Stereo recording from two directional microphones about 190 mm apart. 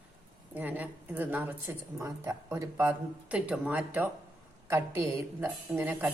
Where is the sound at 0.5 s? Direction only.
10° right (ahead or behind).